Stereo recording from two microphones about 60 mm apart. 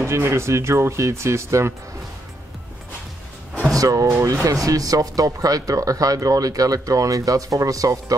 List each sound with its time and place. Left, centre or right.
0.0 s speech: right
3.7 s speech: right